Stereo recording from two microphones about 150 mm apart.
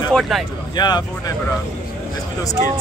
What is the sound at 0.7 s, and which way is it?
Speech, 30° left (ahead or behind).